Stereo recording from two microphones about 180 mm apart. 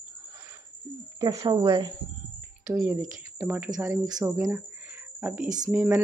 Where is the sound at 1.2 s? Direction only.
20° right (ahead or behind).